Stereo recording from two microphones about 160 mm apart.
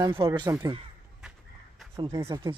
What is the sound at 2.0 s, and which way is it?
Speech, 30° right (ahead or behind).